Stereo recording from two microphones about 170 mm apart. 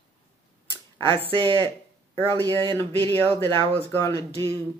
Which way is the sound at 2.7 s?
15° left (ahead or behind).